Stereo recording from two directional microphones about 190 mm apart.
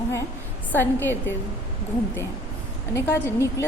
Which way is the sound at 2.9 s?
15° left (ahead or behind).